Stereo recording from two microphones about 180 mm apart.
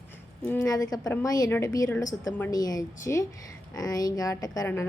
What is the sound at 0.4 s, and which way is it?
A woman's voice, 15° left (ahead or behind).